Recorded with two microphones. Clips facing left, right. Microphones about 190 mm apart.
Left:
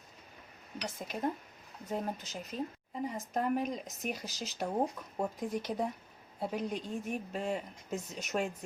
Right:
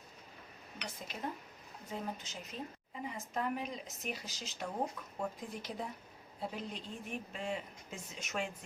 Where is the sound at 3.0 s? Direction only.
45° left (ahead or behind).